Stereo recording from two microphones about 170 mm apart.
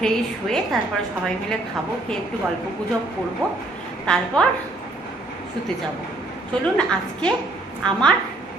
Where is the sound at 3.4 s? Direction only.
20° right (ahead or behind).